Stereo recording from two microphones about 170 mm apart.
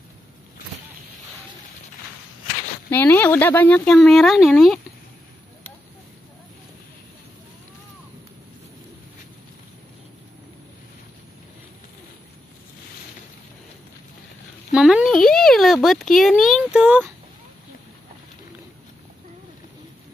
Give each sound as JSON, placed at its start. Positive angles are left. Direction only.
{"t": 2.9, "sound": "speech", "side_deg": 10}
{"t": 14.7, "sound": "speech", "side_deg": 0}